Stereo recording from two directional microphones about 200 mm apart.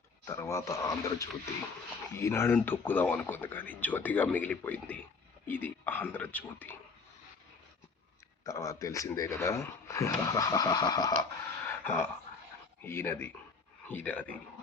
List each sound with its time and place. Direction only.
0.3 s speech: 15° left (ahead or behind)
8.4 s speech: 15° left (ahead or behind)